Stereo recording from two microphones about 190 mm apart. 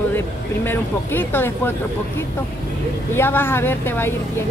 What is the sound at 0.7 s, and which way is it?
Speech, 10° left (ahead or behind).